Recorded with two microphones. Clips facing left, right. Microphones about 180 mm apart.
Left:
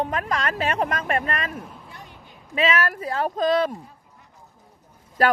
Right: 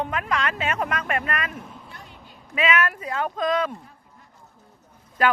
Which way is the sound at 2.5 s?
30° left (ahead or behind).